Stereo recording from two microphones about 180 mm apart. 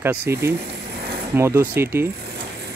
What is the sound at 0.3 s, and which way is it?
Speech, 15° right (ahead or behind).